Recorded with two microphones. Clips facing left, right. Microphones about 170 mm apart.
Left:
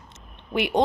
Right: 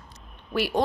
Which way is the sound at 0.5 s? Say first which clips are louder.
Left 2 dB; 20° left (ahead or behind).